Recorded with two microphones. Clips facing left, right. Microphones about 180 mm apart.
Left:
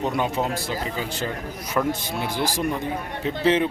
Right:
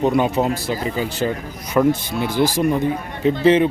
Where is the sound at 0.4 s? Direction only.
45° right (ahead or behind).